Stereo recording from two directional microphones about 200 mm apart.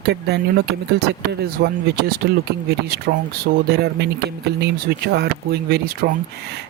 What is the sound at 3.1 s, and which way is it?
Speech, 40° right (ahead or behind).